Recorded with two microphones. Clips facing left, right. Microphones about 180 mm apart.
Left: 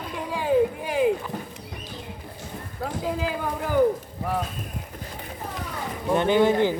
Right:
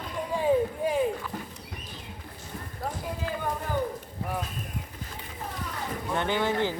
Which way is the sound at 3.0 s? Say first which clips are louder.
Left 6 dB; 90° left.